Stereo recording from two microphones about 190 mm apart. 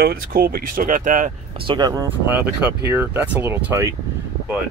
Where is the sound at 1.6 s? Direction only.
25° right (ahead or behind).